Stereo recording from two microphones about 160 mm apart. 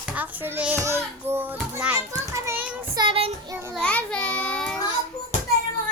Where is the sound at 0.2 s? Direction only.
10° right (ahead or behind).